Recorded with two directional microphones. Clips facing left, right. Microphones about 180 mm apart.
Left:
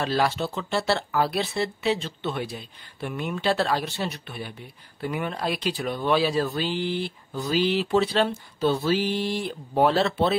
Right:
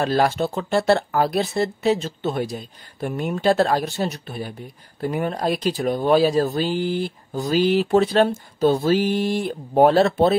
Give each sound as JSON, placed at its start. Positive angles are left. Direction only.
{"t": 0.0, "sound": "speech", "side_deg": -45}